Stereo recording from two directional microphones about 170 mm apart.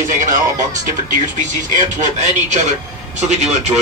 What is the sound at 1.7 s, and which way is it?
Speech, 50° right (ahead or behind).